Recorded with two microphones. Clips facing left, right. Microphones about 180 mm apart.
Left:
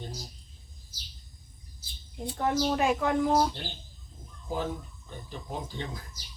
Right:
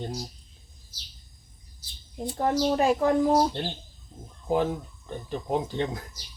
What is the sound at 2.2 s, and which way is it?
A woman's voice, 35° right (ahead or behind).